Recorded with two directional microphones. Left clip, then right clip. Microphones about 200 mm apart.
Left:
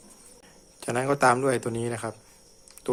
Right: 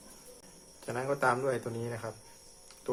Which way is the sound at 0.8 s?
50° left (ahead or behind).